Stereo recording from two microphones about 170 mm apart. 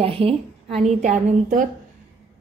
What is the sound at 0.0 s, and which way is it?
A woman's voice, 35° right (ahead or behind).